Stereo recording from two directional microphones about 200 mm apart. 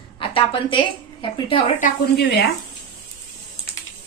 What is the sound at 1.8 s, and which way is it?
Speech, 55° left (ahead or behind).